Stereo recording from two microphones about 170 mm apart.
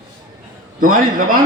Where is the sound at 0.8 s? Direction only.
55° right (ahead or behind).